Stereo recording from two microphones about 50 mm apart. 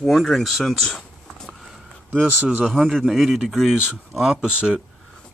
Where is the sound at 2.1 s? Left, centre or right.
Right.